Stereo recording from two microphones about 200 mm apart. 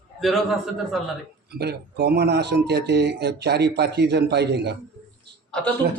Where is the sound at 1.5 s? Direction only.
55° right (ahead or behind).